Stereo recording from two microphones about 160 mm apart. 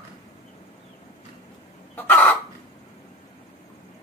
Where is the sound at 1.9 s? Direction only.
10° left (ahead or behind).